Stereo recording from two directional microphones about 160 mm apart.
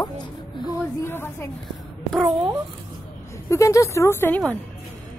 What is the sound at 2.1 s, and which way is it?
Speech, 10° right (ahead or behind).